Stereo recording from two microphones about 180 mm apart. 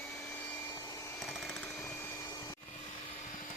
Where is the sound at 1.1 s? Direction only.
5° left (ahead or behind).